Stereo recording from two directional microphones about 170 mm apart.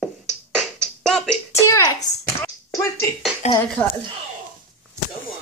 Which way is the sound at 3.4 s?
40° left (ahead or behind).